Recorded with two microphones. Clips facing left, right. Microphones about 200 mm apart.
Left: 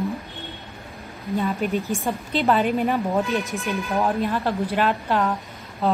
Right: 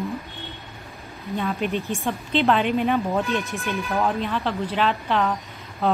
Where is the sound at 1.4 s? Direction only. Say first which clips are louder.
Left 1 dB; centre (ahead or behind).